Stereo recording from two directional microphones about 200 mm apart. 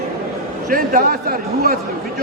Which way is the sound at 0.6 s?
45° right (ahead or behind).